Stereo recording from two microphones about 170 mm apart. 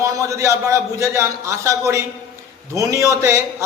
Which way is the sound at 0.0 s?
20° right (ahead or behind).